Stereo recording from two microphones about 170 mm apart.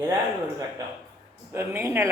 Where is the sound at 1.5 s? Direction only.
15° right (ahead or behind).